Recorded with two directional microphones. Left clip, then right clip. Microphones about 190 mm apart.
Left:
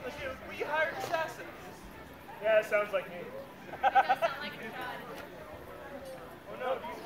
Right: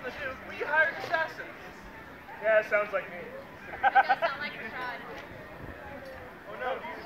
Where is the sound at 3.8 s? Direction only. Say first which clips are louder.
Right 3 dB; 60° left (ahead or behind).